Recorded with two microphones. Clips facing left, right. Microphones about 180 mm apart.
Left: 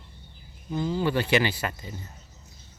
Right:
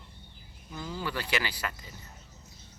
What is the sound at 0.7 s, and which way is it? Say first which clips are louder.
Speech: left 10 dB; 25° left (ahead or behind).